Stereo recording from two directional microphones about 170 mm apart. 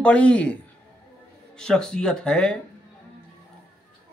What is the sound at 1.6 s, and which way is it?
Speech, 5° left (ahead or behind).